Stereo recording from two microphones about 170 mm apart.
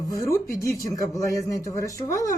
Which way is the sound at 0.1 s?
20° left (ahead or behind).